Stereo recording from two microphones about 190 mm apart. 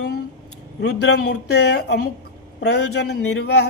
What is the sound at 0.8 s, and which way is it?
Speech, 65° left (ahead or behind).